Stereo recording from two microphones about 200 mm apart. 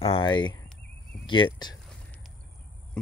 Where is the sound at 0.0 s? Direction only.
25° left (ahead or behind).